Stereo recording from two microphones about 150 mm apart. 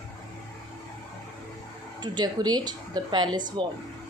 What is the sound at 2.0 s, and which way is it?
A woman's voice, 30° right (ahead or behind).